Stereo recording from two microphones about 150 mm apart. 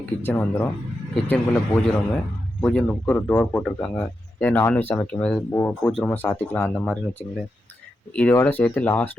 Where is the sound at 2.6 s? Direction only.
5° left (ahead or behind).